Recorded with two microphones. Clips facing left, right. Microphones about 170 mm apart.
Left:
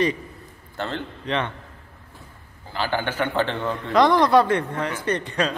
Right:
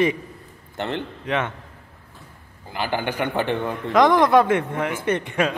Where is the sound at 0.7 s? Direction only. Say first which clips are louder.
Right 2 dB; 20° right (ahead or behind).